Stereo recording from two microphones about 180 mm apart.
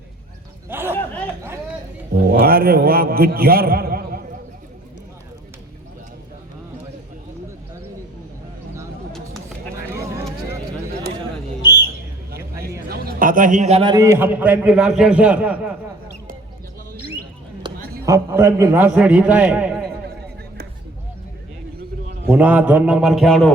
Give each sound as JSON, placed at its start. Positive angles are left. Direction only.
{"t": 0.7, "sound": "a man's voice", "side_deg": -10}
{"t": 2.3, "sound": "a man's voice", "side_deg": -55}
{"t": 9.1, "sound": "a sound", "side_deg": 0}
{"t": 12.9, "sound": "a man's voice", "side_deg": -55}
{"t": 13.9, "sound": "a man's voice", "side_deg": -15}
{"t": 17.7, "sound": "a sound", "side_deg": -55}
{"t": 18.0, "sound": "a man's voice", "side_deg": -15}
{"t": 22.3, "sound": "a man's voice", "side_deg": -10}